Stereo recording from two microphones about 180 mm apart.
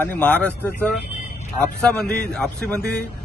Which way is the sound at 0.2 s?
10° left (ahead or behind).